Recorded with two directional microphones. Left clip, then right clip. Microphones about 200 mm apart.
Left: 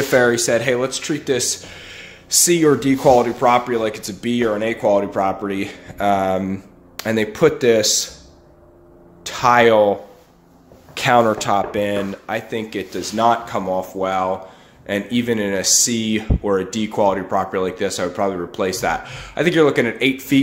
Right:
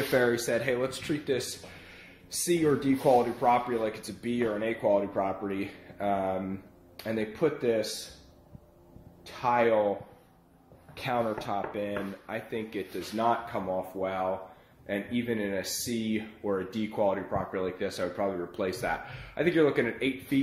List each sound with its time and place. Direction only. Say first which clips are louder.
0.1 s speech: left 11 dB; 5° left (ahead or behind); by 7.9 s 25° left (ahead or behind)
9.2 s speech: left 13 dB; 25° left (ahead or behind)
11.0 s speech: left 15 dB; 20° left (ahead or behind)